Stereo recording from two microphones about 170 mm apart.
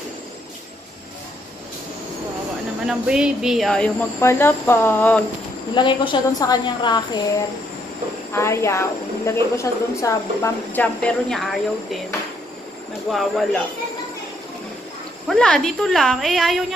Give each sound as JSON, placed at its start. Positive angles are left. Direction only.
{"t": 2.9, "sound": "a woman's voice", "side_deg": -5}
{"t": 5.8, "sound": "a woman's voice", "side_deg": 30}
{"t": 13.1, "sound": "a woman's voice", "side_deg": 0}
{"t": 15.2, "sound": "a woman's voice", "side_deg": 5}